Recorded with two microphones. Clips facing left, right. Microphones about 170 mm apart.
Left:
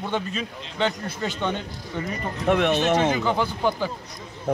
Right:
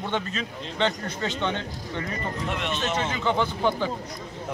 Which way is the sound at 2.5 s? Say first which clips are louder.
Left 11 dB; 60° left (ahead or behind).